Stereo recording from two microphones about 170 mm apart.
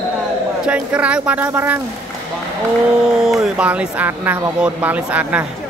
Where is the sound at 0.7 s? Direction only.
5° right (ahead or behind).